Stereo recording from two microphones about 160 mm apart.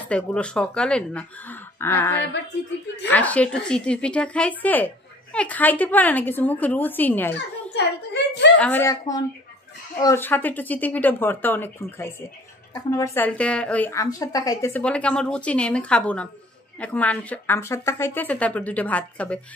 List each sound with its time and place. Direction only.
0.1 s speech: 5° left (ahead or behind)
7.3 s a child's voice: 90° left
8.5 s speech: 5° left (ahead or behind)
8.8 s speech: 20° left (ahead or behind)
14.8 s speech: 5° left (ahead or behind)